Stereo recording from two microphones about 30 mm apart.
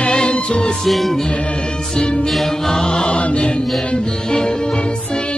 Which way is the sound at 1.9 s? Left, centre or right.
Left.